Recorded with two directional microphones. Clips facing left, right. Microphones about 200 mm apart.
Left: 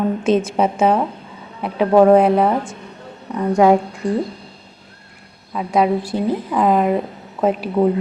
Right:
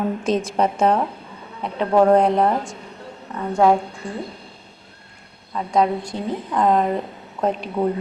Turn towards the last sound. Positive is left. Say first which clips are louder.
# left 5 dB
turn(degrees=5)  # may be behind; listen again after turning